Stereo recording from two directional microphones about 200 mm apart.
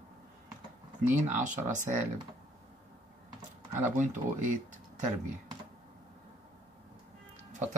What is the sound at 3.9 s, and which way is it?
Speech, 40° right (ahead or behind).